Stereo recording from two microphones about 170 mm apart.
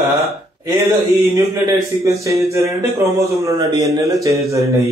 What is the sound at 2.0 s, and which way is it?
A man's voice, 20° right (ahead or behind).